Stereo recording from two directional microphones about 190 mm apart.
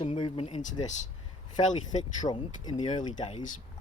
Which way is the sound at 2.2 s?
20° left (ahead or behind).